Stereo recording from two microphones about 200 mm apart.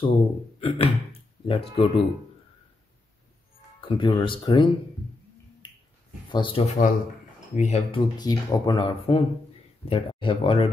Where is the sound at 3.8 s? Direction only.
25° left (ahead or behind).